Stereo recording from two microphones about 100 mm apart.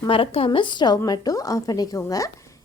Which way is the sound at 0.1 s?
65° left (ahead or behind).